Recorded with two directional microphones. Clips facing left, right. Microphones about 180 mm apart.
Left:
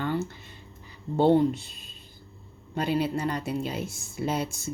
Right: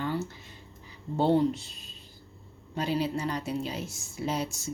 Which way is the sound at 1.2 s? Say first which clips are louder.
Left 3 dB; 55° left (ahead or behind).